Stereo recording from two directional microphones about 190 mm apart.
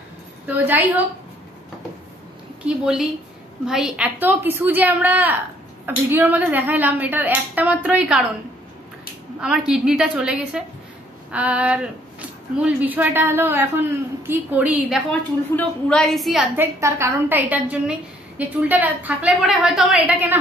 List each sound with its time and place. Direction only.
0.7 s a woman's voice: 10° right (ahead or behind)
2.6 s a woman's voice: 5° right (ahead or behind)
9.7 s a woman's voice: 5° right (ahead or behind)
16.5 s a woman's voice: 15° right (ahead or behind)